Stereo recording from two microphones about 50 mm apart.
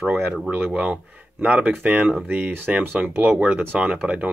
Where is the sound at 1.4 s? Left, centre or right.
Right.